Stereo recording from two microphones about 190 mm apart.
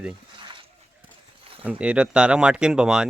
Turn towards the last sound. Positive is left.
turn(degrees=-5)  # may be behind; listen again after turning